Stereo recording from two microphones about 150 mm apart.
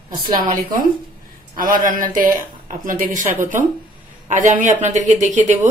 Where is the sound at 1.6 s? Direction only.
65° right (ahead or behind).